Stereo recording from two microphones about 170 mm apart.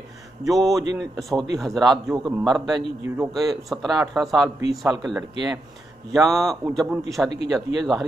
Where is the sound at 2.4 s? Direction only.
Centre (ahead or behind).